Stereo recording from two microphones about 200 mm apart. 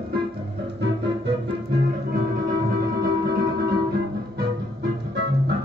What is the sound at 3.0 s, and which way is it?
Music, 50° right (ahead or behind).